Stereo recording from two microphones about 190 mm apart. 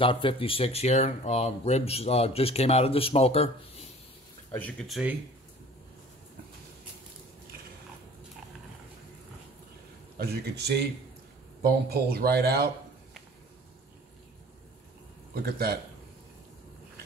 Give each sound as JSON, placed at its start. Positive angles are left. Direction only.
{"t": 0.0, "sound": "speech", "side_deg": 25}
{"t": 4.5, "sound": "speech", "side_deg": 10}
{"t": 10.1, "sound": "speech", "side_deg": -55}
{"t": 15.3, "sound": "a man's voice", "side_deg": -55}